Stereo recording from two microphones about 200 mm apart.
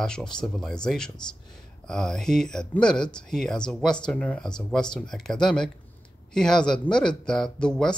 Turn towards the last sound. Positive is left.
turn(degrees=5)  # may be behind; listen again after turning